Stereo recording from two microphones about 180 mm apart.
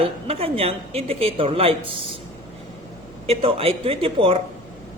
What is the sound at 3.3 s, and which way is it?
A woman's voice, 35° right (ahead or behind).